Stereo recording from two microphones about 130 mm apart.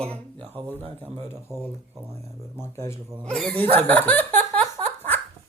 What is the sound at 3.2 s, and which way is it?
Speech, 5° left (ahead or behind).